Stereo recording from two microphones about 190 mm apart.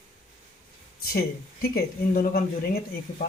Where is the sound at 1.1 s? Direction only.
55° left (ahead or behind).